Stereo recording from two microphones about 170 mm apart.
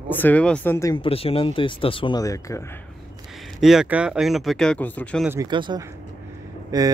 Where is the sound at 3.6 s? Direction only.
5° right (ahead or behind).